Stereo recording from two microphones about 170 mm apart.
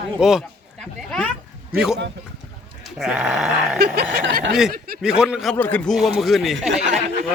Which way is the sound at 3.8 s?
70° right (ahead or behind).